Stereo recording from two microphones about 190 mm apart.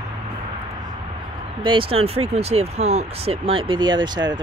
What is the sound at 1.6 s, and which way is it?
Speech, 30° right (ahead or behind).